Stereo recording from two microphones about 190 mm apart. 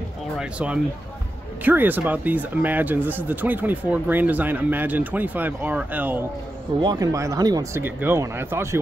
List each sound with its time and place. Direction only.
0.4 s speech: 5° right (ahead or behind)
6.8 s speech: 20° right (ahead or behind)